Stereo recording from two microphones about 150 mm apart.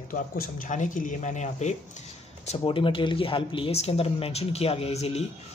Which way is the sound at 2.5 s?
35° left (ahead or behind).